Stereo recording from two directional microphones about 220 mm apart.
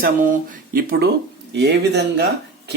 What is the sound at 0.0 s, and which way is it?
Speech, 40° right (ahead or behind).